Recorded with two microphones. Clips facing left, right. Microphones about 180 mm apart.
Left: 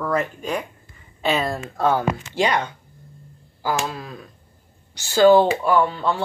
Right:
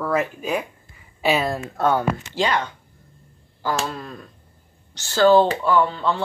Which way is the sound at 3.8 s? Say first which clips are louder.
Even; 5° left (ahead or behind).